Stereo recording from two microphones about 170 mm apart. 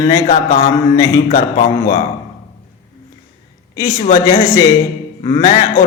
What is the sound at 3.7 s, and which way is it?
A man's voice, 20° left (ahead or behind).